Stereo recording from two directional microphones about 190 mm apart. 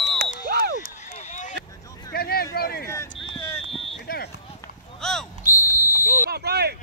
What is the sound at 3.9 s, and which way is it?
Fire alarm, 55° left (ahead or behind).